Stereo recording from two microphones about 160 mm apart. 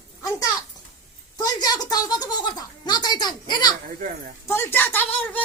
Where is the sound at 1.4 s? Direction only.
25° left (ahead or behind).